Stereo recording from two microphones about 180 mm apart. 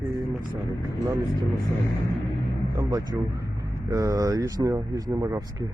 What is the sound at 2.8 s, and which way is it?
Speech, 20° right (ahead or behind).